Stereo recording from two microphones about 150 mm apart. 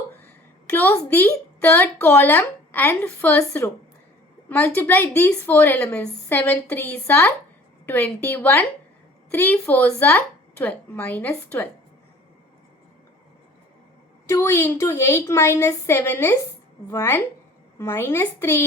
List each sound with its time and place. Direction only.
0.3 s a woman's voice: 10° left (ahead or behind)
14.3 s a woman's voice: 20° left (ahead or behind)